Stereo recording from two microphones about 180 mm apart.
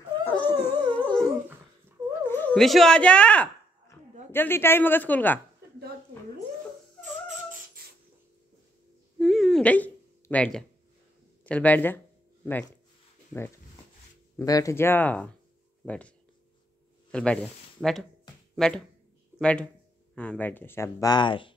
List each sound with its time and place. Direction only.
0.2 s dog: 10° left (ahead or behind)
2.2 s speech: 10° left (ahead or behind)
7.0 s music: 45° right (ahead or behind)
9.2 s a sound: centre (ahead or behind)
11.4 s speech: 5° left (ahead or behind)
14.3 s speech: 20° left (ahead or behind)
17.1 s speech: 5° left (ahead or behind); by 21.5 s 30° left (ahead or behind)